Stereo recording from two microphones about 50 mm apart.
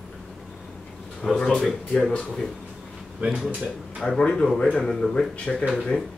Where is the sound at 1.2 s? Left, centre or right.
Centre.